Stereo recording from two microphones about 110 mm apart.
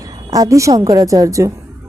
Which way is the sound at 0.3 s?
30° right (ahead or behind).